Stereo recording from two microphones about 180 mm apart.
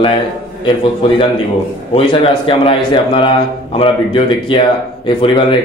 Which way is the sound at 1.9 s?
30° left (ahead or behind).